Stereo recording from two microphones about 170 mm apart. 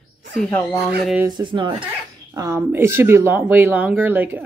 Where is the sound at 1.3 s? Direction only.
25° right (ahead or behind).